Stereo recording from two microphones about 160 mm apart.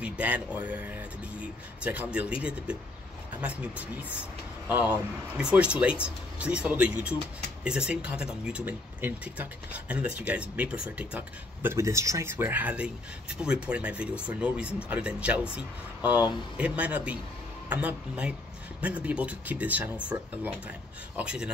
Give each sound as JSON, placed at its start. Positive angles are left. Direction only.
{"t": 0.0, "sound": "speech", "side_deg": -10}